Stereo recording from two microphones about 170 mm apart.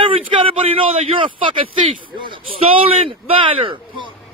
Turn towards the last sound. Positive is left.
turn(degrees=-30)  # may be behind; listen again after turning